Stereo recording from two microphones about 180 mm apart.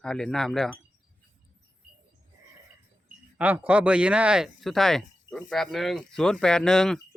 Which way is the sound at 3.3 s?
10° right (ahead or behind).